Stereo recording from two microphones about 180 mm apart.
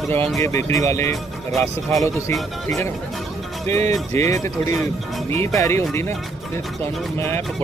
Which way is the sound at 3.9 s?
15° left (ahead or behind).